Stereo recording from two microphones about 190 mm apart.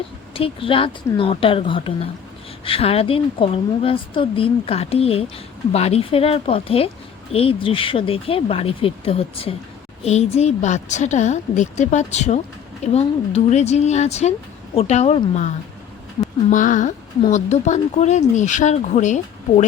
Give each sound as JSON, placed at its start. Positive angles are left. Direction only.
{"t": 0.3, "sound": "a woman's voice", "side_deg": 30}
{"t": 16.5, "sound": "a woman's voice", "side_deg": 40}